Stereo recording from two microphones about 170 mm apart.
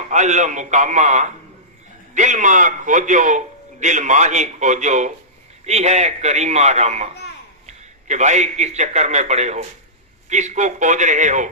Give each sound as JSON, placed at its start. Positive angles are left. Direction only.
{"t": 0.1, "sound": "a man's voice", "side_deg": -45}